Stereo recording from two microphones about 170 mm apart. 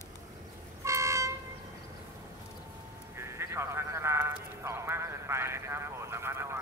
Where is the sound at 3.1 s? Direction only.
15° right (ahead or behind).